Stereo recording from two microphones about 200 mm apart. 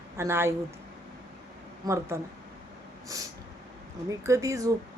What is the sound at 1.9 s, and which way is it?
Speech, 15° right (ahead or behind).